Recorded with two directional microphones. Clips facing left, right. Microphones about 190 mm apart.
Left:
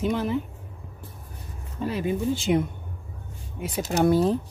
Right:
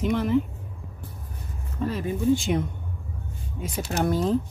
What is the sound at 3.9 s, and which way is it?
Speech, 15° left (ahead or behind).